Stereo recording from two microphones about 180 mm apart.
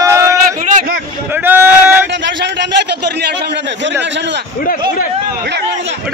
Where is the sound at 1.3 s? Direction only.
10° right (ahead or behind).